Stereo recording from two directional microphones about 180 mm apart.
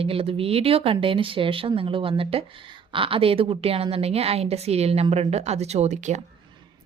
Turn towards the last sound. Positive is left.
turn(degrees=-40)  # may be behind; listen again after turning